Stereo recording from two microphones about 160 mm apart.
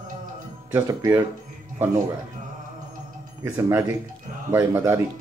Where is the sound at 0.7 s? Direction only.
20° right (ahead or behind).